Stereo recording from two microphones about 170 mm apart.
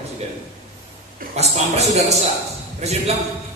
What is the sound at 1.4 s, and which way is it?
A man's voice, 40° right (ahead or behind).